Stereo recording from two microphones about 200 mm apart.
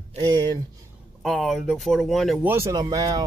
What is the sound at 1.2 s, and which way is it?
Speech, centre (ahead or behind).